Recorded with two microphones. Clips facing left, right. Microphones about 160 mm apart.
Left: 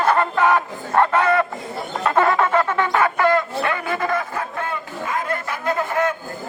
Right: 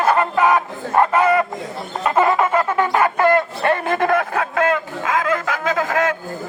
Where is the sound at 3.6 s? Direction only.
40° right (ahead or behind).